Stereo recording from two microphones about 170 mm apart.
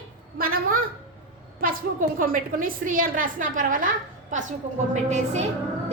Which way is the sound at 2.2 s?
55° right (ahead or behind).